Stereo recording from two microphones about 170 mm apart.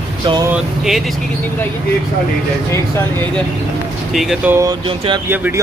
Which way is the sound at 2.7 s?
15° left (ahead or behind).